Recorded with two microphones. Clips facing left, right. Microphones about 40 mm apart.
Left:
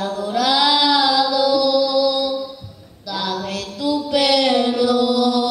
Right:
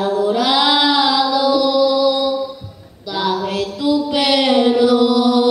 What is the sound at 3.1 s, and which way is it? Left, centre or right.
Female singing, right.